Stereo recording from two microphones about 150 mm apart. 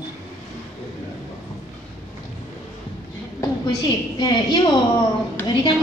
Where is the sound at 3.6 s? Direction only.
25° left (ahead or behind).